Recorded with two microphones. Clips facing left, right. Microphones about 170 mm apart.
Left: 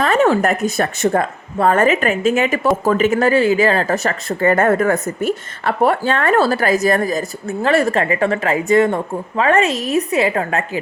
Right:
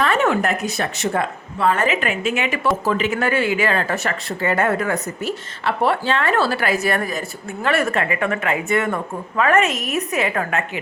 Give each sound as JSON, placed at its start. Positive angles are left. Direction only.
{"t": 0.0, "sound": "speech", "side_deg": 40}